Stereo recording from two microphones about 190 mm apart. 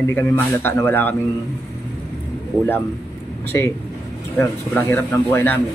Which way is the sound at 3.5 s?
15° left (ahead or behind).